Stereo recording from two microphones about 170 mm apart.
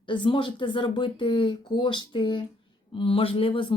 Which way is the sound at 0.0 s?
30° left (ahead or behind).